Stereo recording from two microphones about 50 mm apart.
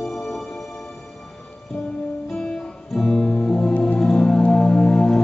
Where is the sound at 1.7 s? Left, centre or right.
Left.